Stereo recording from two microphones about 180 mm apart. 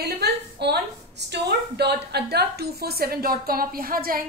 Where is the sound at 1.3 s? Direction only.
70° right (ahead or behind).